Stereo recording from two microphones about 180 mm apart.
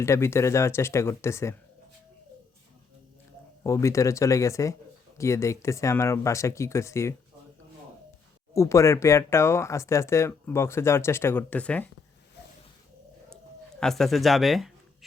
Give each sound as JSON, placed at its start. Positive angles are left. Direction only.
{"t": 0.0, "sound": "speech", "side_deg": 15}
{"t": 3.6, "sound": "speech", "side_deg": 15}
{"t": 8.5, "sound": "speech", "side_deg": 15}
{"t": 13.3, "sound": "speech", "side_deg": 5}